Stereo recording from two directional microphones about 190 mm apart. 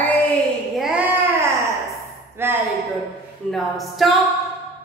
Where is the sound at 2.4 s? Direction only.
10° right (ahead or behind).